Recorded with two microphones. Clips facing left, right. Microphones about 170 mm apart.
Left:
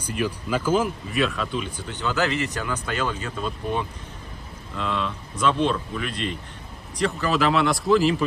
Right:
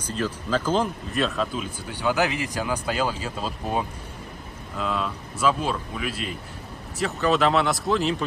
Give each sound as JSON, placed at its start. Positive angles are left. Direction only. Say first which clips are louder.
{"t": 0.1, "sound": "speech", "louder": "even", "side_deg": 10}
{"t": 1.1, "sound": "speech", "louder": "even", "side_deg": 0}
{"t": 4.7, "sound": "speech", "louder": "even", "side_deg": -5}